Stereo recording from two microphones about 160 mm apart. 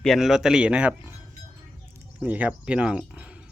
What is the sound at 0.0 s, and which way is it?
A man's voice, centre (ahead or behind).